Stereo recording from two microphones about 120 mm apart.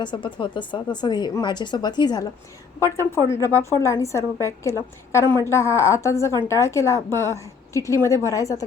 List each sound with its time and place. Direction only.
0.0 s speech: 40° left (ahead or behind)
2.8 s a woman's voice: 25° left (ahead or behind)